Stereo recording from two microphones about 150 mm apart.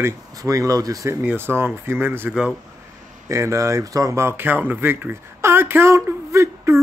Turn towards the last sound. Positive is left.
turn(degrees=-20)  # may be behind; listen again after turning